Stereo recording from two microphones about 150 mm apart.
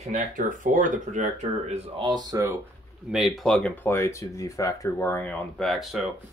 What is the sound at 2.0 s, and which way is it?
Speech, 30° right (ahead or behind).